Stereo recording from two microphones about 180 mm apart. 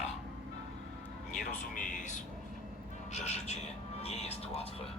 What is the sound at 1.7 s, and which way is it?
Speech, 45° left (ahead or behind).